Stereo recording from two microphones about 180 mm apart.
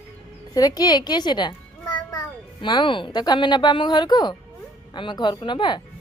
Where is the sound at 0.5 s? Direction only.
20° left (ahead or behind).